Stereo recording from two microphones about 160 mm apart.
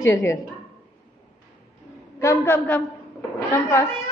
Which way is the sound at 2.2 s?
15° left (ahead or behind).